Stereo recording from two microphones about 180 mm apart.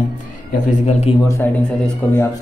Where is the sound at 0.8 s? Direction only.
35° left (ahead or behind).